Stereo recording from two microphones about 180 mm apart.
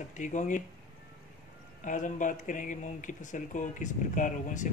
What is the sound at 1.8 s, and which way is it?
Speech, 45° left (ahead or behind).